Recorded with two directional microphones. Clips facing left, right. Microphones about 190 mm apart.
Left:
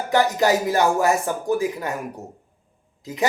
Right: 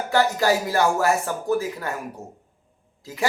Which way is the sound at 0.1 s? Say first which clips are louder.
Left 2 dB; 20° left (ahead or behind).